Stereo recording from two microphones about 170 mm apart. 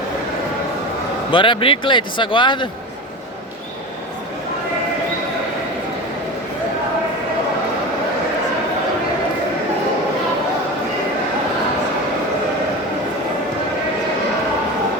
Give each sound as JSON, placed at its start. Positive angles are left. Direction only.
{"t": 1.3, "sound": "speech", "side_deg": 30}